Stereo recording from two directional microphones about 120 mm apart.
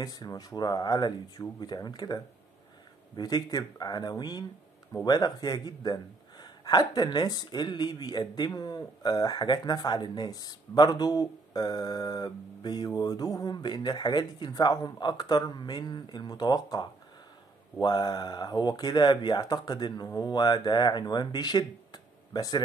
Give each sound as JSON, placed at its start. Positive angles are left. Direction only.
{"t": 0.0, "sound": "speech", "side_deg": 30}